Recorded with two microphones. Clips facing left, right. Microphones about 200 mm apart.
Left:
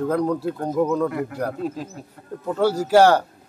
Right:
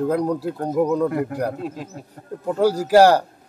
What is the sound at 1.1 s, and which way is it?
Speech, 45° right (ahead or behind).